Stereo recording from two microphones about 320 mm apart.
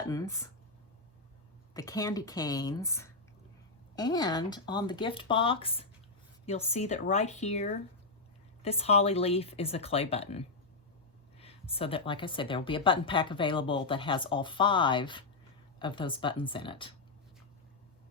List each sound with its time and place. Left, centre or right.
0.1 s speech: centre
1.7 s a woman's voice: centre